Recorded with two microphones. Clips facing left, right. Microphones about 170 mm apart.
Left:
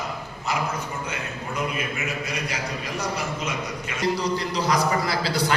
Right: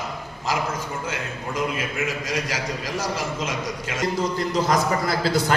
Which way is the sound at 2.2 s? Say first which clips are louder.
Right 3 dB; 90° right.